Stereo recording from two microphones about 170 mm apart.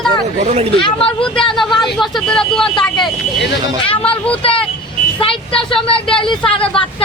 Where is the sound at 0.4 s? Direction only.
40° right (ahead or behind).